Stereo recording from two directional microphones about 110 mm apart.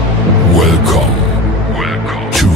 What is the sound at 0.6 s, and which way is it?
Music, centre (ahead or behind).